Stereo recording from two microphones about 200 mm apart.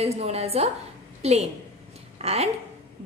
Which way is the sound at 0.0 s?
30° right (ahead or behind).